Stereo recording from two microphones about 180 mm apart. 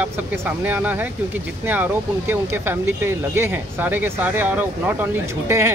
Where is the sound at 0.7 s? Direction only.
10° right (ahead or behind).